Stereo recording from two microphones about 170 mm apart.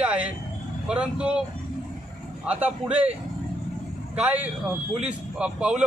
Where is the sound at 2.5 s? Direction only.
10° right (ahead or behind).